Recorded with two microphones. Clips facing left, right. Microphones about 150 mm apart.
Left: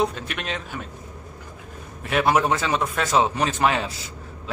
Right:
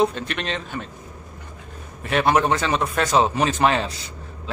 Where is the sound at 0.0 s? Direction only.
5° left (ahead or behind).